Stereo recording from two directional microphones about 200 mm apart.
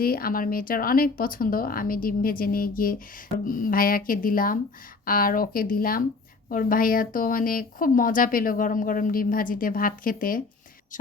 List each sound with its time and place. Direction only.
0.0 s speech: 50° left (ahead or behind)